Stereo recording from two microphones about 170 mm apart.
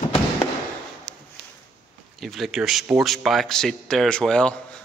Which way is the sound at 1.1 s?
90° right.